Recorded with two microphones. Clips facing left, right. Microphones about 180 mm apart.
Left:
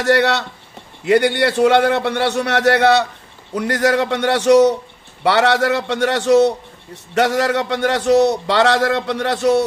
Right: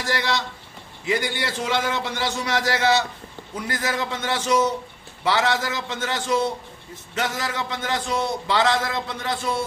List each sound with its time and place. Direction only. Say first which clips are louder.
0.0 s a man's voice: left 10 dB; 65° left (ahead or behind)